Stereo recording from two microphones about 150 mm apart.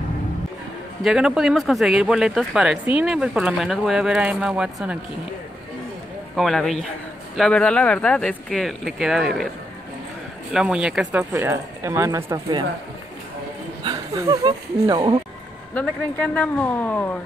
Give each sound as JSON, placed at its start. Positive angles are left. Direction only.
{"t": 1.0, "sound": "speech", "side_deg": -5}
{"t": 6.3, "sound": "speech", "side_deg": 0}
{"t": 10.5, "sound": "speech", "side_deg": -5}
{"t": 11.3, "sound": "speech", "side_deg": -20}
{"t": 13.8, "sound": "speech", "side_deg": -25}
{"t": 15.7, "sound": "speech", "side_deg": 10}